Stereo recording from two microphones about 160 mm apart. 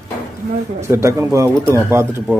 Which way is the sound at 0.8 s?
15° right (ahead or behind).